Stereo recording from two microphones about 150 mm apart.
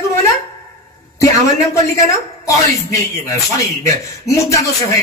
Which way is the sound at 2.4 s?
20° left (ahead or behind).